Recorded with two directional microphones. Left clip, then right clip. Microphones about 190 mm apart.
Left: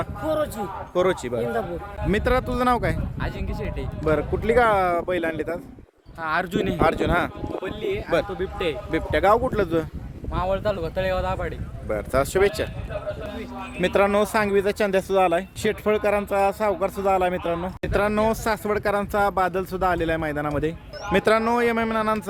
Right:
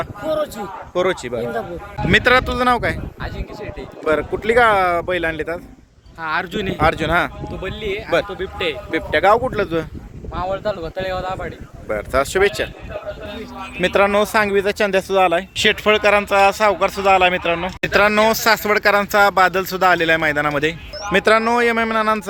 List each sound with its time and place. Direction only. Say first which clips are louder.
0.6 s speech: right 3 dB; centre (ahead or behind)
3.2 s speech: right 1 dB; 30° left (ahead or behind)
4.0 s speech: right 4 dB; 5° right (ahead or behind)
6.2 s speech: right 2 dB; 65° left (ahead or behind)
6.7 s speech: right 5 dB; centre (ahead or behind)
7.4 s speech: right 2 dB; 40° left (ahead or behind)
8.9 s speech: right 5 dB; centre (ahead or behind)
9.6 s speech: right 3 dB; 20° left (ahead or behind)
10.3 s speech: right 2 dB; 30° left (ahead or behind)
11.9 s speech: right 4 dB; 5° right (ahead or behind)
13.8 s speech: right 5 dB; 5° left (ahead or behind)